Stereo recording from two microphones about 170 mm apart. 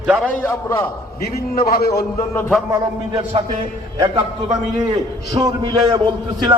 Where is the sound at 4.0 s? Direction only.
25° right (ahead or behind).